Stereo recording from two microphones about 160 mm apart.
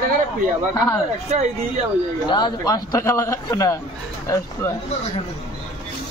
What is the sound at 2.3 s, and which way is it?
A man's voice, 25° left (ahead or behind).